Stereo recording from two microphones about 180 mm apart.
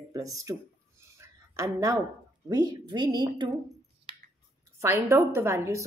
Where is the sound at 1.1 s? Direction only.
15° right (ahead or behind).